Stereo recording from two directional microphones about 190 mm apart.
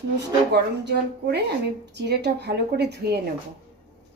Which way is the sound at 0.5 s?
60° right (ahead or behind).